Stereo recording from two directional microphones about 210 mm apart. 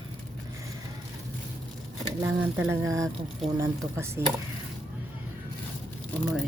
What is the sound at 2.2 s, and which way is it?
Speech, 10° right (ahead or behind).